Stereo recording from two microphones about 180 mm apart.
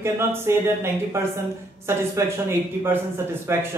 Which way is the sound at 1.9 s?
15° right (ahead or behind).